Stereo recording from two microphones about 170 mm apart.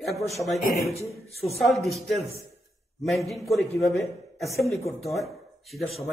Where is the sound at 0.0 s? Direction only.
Centre (ahead or behind).